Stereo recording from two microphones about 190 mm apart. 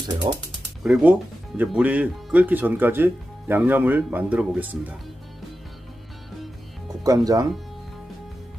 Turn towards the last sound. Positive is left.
turn(degrees=-20)  # may be behind; listen again after turning